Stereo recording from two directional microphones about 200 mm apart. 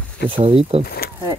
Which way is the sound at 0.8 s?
50° left (ahead or behind).